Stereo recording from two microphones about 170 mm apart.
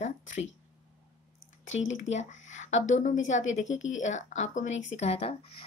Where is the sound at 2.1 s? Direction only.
45° left (ahead or behind).